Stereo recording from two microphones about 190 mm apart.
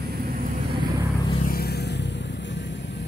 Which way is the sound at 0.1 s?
50° right (ahead or behind).